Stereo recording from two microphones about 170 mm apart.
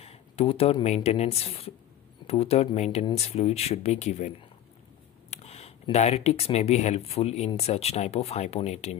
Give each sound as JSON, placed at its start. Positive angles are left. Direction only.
{"t": 0.0, "sound": "speech", "side_deg": 35}